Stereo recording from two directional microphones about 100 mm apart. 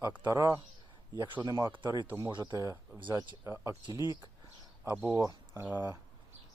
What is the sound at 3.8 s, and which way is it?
Speech, 45° left (ahead or behind).